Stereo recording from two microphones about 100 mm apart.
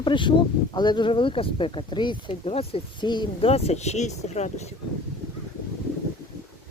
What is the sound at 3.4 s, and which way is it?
Speech, 90° left.